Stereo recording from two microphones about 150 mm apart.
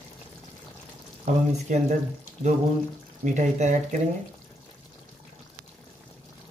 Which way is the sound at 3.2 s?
55° right (ahead or behind).